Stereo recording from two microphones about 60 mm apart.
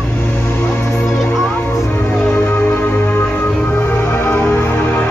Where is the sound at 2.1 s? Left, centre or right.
Left.